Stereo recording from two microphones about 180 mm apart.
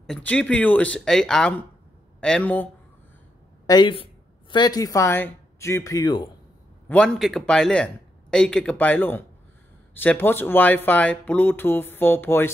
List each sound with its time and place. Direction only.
0.0 s speech: 5° left (ahead or behind)
3.6 s speech: 25° left (ahead or behind)
6.9 s speech: 5° left (ahead or behind)